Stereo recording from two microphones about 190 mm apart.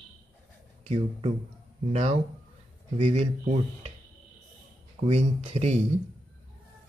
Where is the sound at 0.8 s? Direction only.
30° right (ahead or behind).